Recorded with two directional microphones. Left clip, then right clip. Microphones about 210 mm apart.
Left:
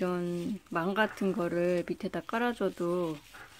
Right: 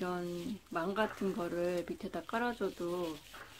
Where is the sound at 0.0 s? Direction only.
35° left (ahead or behind).